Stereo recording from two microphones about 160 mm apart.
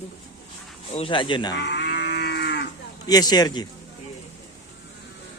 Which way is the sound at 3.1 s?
25° left (ahead or behind).